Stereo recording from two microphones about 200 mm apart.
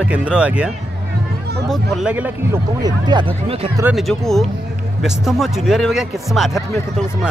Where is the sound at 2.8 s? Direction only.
20° right (ahead or behind).